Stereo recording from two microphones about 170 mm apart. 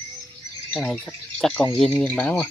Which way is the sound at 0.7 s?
5° left (ahead or behind).